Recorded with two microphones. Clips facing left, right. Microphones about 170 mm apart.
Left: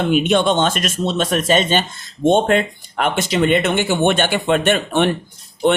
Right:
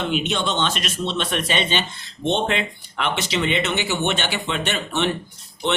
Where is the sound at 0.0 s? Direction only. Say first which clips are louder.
Left 8 dB; 50° left (ahead or behind).